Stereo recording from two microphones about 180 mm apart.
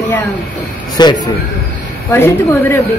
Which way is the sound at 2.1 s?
10° left (ahead or behind).